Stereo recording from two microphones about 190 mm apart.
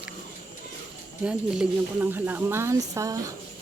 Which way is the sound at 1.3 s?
5° right (ahead or behind).